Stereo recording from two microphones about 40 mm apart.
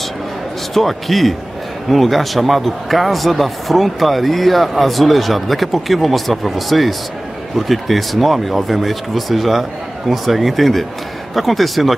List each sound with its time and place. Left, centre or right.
0.7 s a man's voice: centre